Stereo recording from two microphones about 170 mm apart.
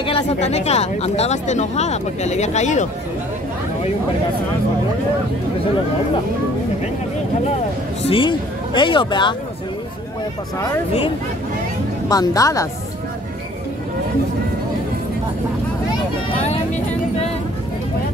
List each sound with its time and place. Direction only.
0.0 s speech: 35° left (ahead or behind)
8.0 s speech: 30° left (ahead or behind)
12.1 s speech: 20° left (ahead or behind)
16.3 s vehicle: 40° left (ahead or behind)